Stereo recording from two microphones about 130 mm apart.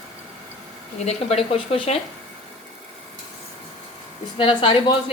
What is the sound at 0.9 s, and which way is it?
Speech, 55° left (ahead or behind).